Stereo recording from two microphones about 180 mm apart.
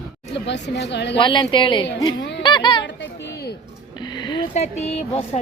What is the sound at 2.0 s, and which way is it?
Music, 25° left (ahead or behind).